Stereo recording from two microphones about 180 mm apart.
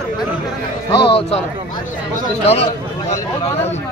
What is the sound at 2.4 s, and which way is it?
Speech, 35° left (ahead or behind).